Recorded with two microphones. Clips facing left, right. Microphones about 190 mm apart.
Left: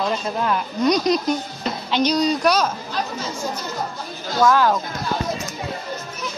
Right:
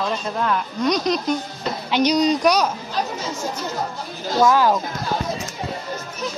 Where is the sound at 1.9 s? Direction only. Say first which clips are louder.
Right 2 dB; 15° right (ahead or behind).